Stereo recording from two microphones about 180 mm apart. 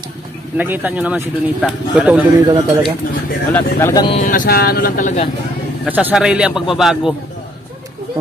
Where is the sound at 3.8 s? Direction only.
15° left (ahead or behind).